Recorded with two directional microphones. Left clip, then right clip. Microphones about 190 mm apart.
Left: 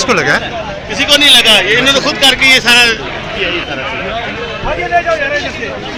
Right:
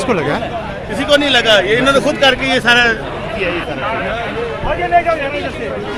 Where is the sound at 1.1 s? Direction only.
55° right (ahead or behind).